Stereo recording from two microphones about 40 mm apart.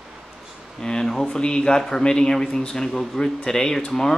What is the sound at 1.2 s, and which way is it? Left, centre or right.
Speech, left.